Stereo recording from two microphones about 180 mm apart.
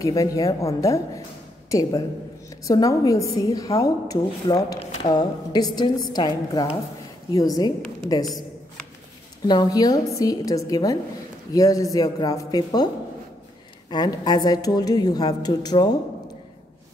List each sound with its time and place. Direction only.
0.0 s a woman's voice: 20° left (ahead or behind)
9.5 s a woman's voice: 20° left (ahead or behind)